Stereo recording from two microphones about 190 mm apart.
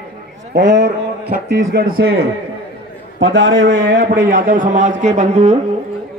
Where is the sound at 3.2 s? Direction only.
70° right (ahead or behind).